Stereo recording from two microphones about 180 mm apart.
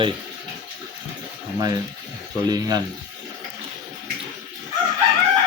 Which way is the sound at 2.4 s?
20° right (ahead or behind).